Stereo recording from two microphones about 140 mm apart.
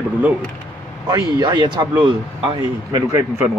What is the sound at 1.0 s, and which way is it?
Speech, 30° right (ahead or behind).